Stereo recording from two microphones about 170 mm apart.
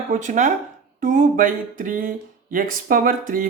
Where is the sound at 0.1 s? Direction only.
45° right (ahead or behind).